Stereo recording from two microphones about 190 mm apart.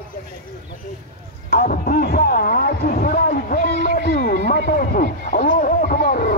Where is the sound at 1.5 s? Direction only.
50° left (ahead or behind).